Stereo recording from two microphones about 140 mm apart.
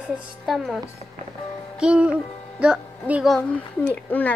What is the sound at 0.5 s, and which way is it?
Speech, centre (ahead or behind).